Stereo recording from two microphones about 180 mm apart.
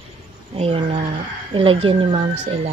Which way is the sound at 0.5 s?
35° right (ahead or behind).